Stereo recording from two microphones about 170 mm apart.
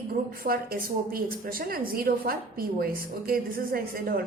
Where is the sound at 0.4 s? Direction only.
60° right (ahead or behind).